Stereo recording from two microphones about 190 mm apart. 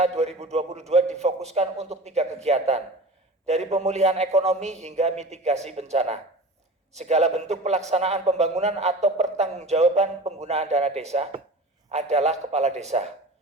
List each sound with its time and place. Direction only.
0.0 s a man's voice: 35° right (ahead or behind)